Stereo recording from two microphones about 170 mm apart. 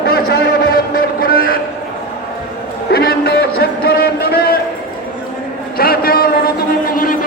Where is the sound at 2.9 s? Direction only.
65° left (ahead or behind).